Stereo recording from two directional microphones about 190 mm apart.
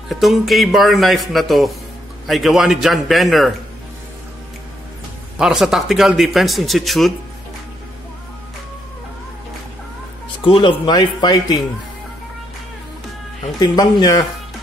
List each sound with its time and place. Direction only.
0.1 s speech: centre (ahead or behind)
5.4 s speech: 5° right (ahead or behind)
10.4 s speech: 25° left (ahead or behind)
13.6 s speech: 20° left (ahead or behind)